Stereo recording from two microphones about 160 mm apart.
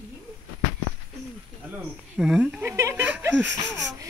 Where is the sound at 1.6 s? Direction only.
5° right (ahead or behind).